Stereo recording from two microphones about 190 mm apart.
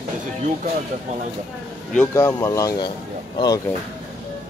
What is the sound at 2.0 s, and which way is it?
Speech, 15° left (ahead or behind).